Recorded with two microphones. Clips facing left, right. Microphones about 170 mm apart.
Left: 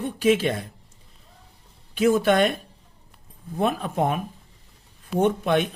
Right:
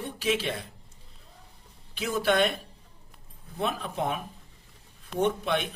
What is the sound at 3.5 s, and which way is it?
Speech, 50° left (ahead or behind).